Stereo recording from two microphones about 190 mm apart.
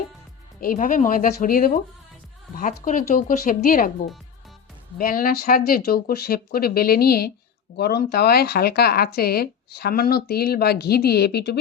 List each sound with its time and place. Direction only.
0.6 s speech: 45° left (ahead or behind)